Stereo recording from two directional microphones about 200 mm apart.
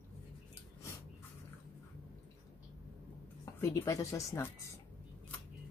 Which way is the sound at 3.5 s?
15° left (ahead or behind).